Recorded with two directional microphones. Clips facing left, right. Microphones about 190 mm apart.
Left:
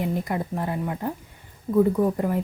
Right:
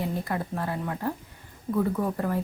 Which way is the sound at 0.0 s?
15° left (ahead or behind).